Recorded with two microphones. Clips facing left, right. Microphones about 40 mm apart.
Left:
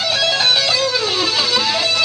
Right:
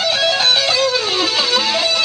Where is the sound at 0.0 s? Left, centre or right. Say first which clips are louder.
Right 1 dB; centre.